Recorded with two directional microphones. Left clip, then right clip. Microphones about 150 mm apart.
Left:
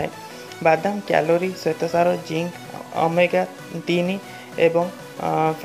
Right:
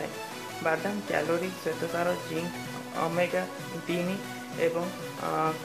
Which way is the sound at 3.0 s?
35° left (ahead or behind).